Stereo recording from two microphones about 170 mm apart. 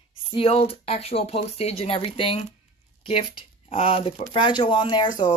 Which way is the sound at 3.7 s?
35° left (ahead or behind).